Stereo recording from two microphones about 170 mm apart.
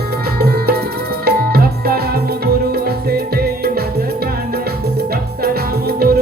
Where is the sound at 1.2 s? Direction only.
65° right (ahead or behind).